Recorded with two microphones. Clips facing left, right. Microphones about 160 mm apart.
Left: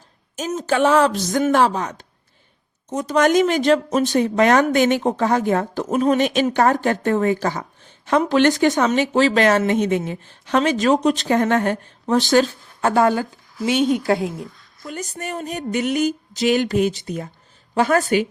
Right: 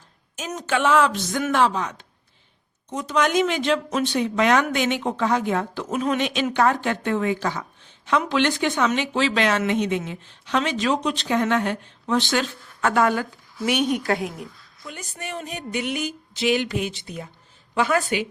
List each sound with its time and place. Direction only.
0.5 s a woman's voice: 35° left (ahead or behind)
14.8 s a woman's voice: 40° left (ahead or behind)